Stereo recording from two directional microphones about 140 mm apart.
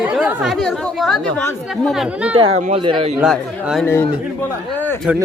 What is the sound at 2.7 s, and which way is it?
Speech, 40° right (ahead or behind).